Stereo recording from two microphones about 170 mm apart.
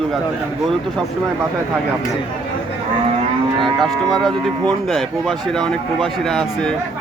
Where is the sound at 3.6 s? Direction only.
25° right (ahead or behind).